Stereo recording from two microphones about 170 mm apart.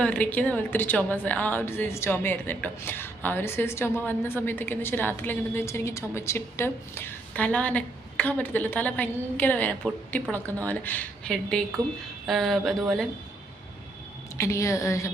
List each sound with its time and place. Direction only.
0.0 s a woman's voice: 10° left (ahead or behind)
14.3 s a woman's voice: 15° left (ahead or behind)